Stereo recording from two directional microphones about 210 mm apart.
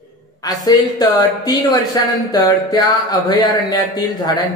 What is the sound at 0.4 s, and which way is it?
Speech, 20° left (ahead or behind).